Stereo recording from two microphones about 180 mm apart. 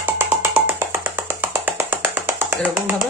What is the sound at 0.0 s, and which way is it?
Music, 10° right (ahead or behind).